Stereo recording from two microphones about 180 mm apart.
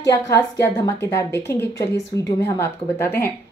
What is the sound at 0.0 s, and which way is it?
A woman's voice, 15° left (ahead or behind).